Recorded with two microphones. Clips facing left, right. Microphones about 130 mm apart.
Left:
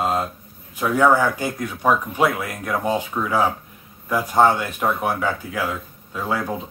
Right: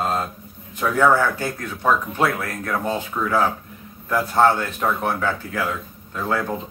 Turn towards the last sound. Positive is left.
turn(degrees=10)  # may be behind; listen again after turning